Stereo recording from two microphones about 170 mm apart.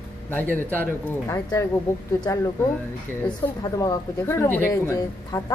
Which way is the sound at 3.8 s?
15° left (ahead or behind).